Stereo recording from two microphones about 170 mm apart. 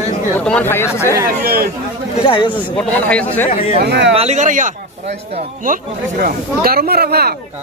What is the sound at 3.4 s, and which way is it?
Speech, 35° left (ahead or behind).